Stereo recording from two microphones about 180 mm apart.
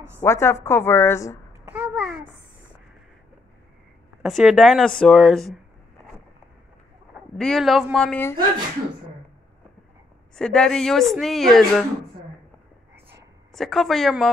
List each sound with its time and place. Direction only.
0.2 s a woman's voice: 15° left (ahead or behind)
1.7 s babbling: 5° right (ahead or behind)
4.2 s a woman's voice: centre (ahead or behind)
7.3 s a woman's voice: centre (ahead or behind)
10.3 s a woman's voice: 5° left (ahead or behind)
13.5 s a woman's voice: centre (ahead or behind)